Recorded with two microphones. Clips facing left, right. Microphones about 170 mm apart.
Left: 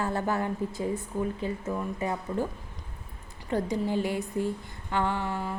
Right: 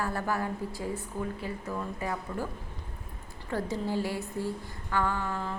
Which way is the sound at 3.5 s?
20° left (ahead or behind).